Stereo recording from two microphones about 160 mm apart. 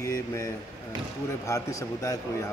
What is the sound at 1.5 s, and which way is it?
Speech, 20° left (ahead or behind).